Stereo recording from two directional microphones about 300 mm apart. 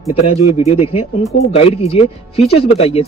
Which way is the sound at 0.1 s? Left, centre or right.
Centre.